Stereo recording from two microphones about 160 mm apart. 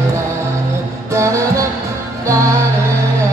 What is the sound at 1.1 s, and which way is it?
Music, 20° right (ahead or behind).